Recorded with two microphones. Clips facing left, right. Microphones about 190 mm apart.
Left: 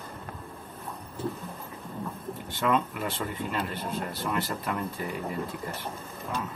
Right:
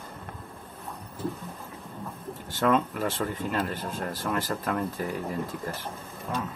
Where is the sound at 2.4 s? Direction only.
45° right (ahead or behind).